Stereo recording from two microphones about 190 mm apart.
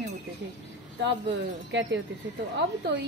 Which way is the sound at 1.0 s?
65° right (ahead or behind).